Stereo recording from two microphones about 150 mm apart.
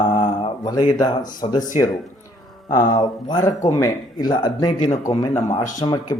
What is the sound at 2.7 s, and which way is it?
Speech, 30° left (ahead or behind).